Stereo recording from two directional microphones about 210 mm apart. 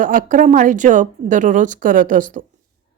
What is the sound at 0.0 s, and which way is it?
A woman's voice, 40° right (ahead or behind).